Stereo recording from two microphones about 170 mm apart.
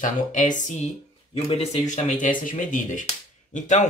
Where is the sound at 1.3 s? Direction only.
35° left (ahead or behind).